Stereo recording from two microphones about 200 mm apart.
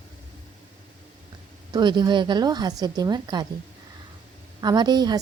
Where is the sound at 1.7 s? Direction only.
20° right (ahead or behind).